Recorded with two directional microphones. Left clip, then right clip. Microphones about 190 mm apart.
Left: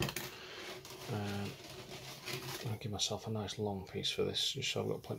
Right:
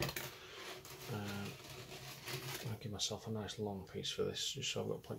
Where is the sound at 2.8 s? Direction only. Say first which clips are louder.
Left 5 dB; 30° left (ahead or behind).